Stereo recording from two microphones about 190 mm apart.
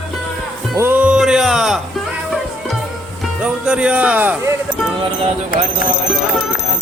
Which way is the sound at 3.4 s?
5° right (ahead or behind).